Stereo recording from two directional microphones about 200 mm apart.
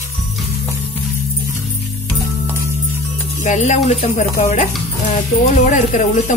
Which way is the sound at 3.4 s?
35° left (ahead or behind).